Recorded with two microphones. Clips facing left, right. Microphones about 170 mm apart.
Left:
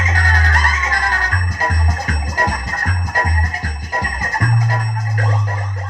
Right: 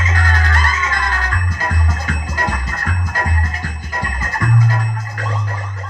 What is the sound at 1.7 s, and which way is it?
Music, 40° left (ahead or behind).